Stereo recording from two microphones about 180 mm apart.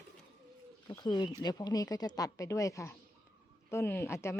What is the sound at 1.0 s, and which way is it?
Speech, 25° left (ahead or behind).